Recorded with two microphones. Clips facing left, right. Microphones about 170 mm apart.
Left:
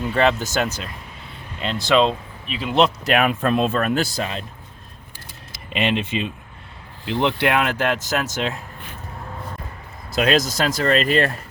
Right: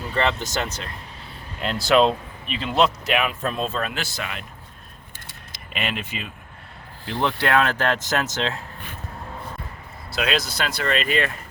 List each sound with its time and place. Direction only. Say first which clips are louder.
0.1 s speech: left 4 dB; 10° left (ahead or behind)
1.6 s speech: even; 5° right (ahead or behind)
3.1 s speech: left 5 dB; 50° left (ahead or behind); by 4.4 s 30° left (ahead or behind)
5.7 s speech: left 7 dB; 25° left (ahead or behind)
10.1 s speech: left 6 dB; 45° left (ahead or behind)